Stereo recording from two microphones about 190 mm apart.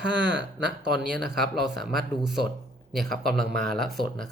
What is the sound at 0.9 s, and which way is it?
Speech, centre (ahead or behind).